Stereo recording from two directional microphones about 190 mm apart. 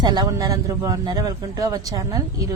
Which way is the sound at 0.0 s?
20° right (ahead or behind).